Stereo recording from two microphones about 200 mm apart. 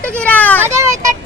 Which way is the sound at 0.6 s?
15° right (ahead or behind).